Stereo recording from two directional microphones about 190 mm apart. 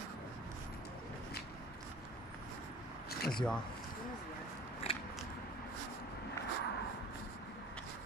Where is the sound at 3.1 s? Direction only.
55° left (ahead or behind).